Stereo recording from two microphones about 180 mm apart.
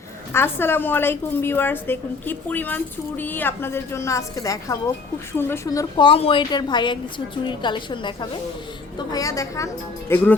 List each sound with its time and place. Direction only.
0.3 s a woman's voice: 15° left (ahead or behind)